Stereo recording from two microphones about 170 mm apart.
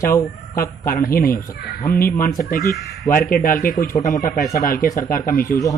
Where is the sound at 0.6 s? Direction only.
60° left (ahead or behind).